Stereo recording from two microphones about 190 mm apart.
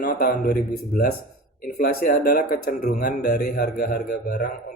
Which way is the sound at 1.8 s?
45° left (ahead or behind).